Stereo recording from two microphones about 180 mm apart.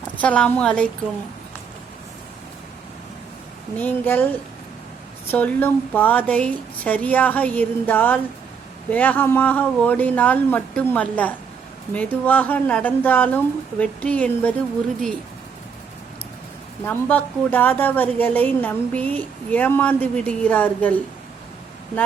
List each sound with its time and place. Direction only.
0.2 s a woman's voice: 5° left (ahead or behind)
3.8 s a woman's voice: 10° left (ahead or behind)
5.3 s a woman's voice: 10° left (ahead or behind)
16.8 s a woman's voice: 10° left (ahead or behind)